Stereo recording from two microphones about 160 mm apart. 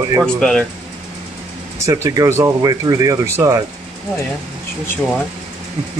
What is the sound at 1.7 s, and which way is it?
Speech, 15° right (ahead or behind).